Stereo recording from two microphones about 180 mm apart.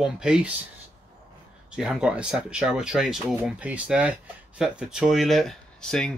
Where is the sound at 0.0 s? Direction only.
5° right (ahead or behind).